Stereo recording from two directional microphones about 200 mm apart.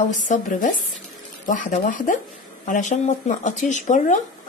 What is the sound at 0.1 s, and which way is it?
Speech, 40° left (ahead or behind).